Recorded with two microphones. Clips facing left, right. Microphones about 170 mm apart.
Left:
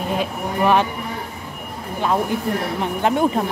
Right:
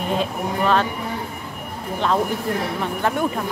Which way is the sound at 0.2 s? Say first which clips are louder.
Left 1 dB; 15° left (ahead or behind).